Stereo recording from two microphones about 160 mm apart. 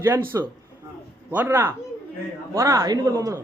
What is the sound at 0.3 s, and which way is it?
A man's voice, 20° right (ahead or behind).